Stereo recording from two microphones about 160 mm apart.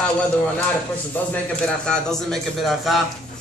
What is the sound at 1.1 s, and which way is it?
A man's voice, 5° left (ahead or behind).